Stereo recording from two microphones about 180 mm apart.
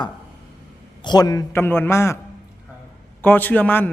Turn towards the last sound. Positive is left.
turn(degrees=10)  # may be behind; listen again after turning